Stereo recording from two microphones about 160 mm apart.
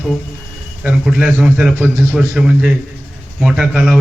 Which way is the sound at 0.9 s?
5° right (ahead or behind).